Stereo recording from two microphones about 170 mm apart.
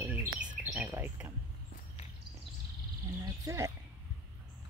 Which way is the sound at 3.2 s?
20° right (ahead or behind).